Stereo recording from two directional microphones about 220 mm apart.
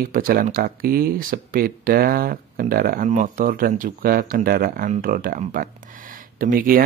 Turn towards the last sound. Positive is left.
turn(degrees=-40)  # may be behind; listen again after turning